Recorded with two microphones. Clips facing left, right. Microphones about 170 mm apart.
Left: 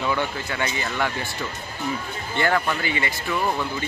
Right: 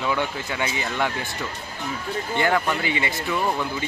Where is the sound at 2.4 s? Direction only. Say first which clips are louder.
Even; 15° right (ahead or behind).